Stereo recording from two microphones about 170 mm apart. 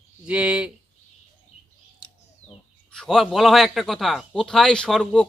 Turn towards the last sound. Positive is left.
turn(degrees=0)  # may be behind; listen again after turning